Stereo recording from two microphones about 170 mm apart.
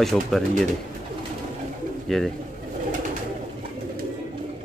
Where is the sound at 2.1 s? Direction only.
5° left (ahead or behind).